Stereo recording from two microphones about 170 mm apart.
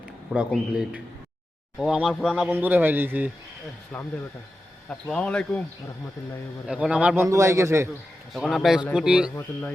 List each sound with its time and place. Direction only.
0.3 s a man's voice: 5° right (ahead or behind)
3.9 s a man's voice: 5° left (ahead or behind)
6.7 s a man's voice: 5° right (ahead or behind)
8.3 s a man's voice: centre (ahead or behind)
9.3 s speech: 10° left (ahead or behind)